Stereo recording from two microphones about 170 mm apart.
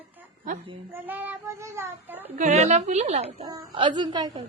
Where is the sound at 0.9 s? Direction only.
10° right (ahead or behind).